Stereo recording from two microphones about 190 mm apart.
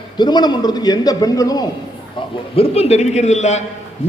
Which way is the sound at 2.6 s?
35° left (ahead or behind).